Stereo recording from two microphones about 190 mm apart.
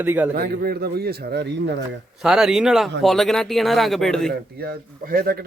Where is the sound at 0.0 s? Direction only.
10° right (ahead or behind).